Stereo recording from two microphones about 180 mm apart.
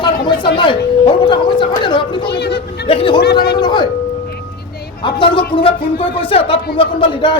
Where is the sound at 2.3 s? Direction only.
70° left (ahead or behind).